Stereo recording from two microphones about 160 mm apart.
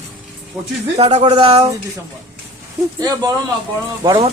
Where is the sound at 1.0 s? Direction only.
40° right (ahead or behind).